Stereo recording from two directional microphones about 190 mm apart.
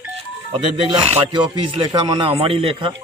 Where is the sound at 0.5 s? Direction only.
30° right (ahead or behind).